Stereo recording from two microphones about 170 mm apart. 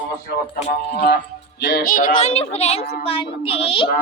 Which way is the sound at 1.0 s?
80° left.